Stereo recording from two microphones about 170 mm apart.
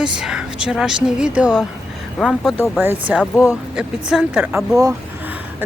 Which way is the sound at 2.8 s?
10° right (ahead or behind).